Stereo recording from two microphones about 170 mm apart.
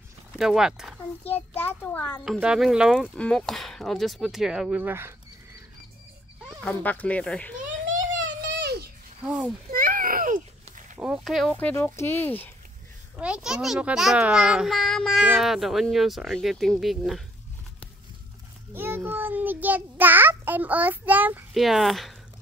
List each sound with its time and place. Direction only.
0.4 s a child's voice: 5° right (ahead or behind)
1.3 s speech: 10° left (ahead or behind)
2.2 s a child's voice: 5° right (ahead or behind)
6.6 s speech: 10° left (ahead or behind)
8.2 s a sound: 90° right
9.2 s a child's voice: 5° right (ahead or behind)
9.7 s a sound: 55° right (ahead or behind)
11.0 s a child's voice: 5° right (ahead or behind)
11.5 s speech: 10° left (ahead or behind)
13.1 s a child's voice: 5° right (ahead or behind)
18.7 s a child's voice: 15° right (ahead or behind)